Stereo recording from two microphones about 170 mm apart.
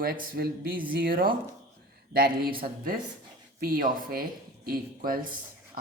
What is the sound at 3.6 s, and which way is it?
Speech, 60° right (ahead or behind).